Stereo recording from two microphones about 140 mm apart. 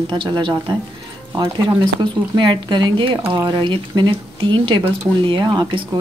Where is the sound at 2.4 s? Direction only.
35° right (ahead or behind).